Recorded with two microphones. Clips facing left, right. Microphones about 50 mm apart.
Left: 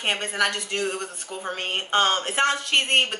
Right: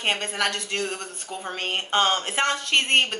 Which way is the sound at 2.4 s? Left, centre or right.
Left.